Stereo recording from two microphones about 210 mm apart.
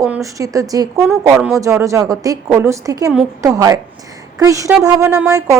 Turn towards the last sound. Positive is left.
turn(degrees=-10)  # may be behind; listen again after turning